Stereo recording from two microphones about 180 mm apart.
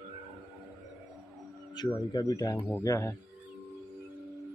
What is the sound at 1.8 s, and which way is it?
A man's voice, 25° left (ahead or behind).